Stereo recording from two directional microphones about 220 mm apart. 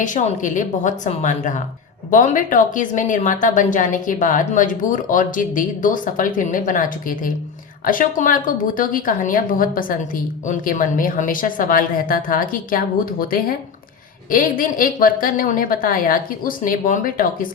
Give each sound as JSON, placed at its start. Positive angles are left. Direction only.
{"t": 0.0, "sound": "a woman's voice", "side_deg": 35}